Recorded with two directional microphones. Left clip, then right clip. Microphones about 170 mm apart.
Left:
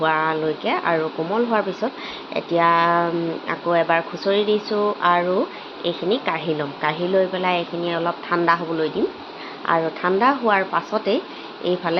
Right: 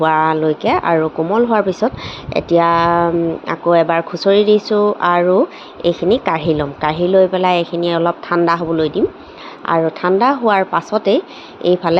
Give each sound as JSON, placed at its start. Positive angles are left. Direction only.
{"t": 0.0, "sound": "a woman's voice", "side_deg": -60}